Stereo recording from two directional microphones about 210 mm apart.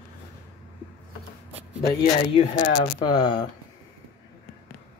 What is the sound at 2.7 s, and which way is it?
Speech, 20° left (ahead or behind).